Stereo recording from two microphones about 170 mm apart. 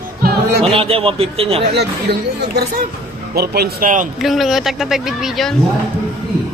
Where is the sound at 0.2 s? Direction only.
65° right (ahead or behind).